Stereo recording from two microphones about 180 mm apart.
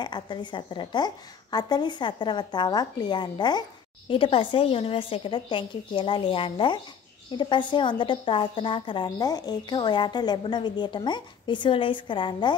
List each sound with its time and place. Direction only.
0.0 s a woman's voice: 25° left (ahead or behind)